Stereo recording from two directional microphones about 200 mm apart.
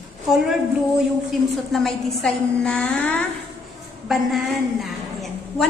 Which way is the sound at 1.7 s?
Centre (ahead or behind).